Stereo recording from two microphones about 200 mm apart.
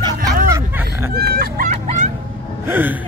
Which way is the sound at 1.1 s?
50° right (ahead or behind).